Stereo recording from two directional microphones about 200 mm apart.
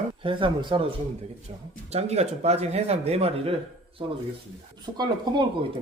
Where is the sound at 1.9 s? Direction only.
30° right (ahead or behind).